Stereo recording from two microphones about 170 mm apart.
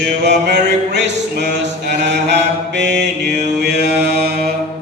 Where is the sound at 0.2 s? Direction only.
85° right.